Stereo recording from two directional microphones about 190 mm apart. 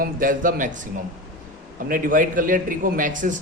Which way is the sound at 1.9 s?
45° right (ahead or behind).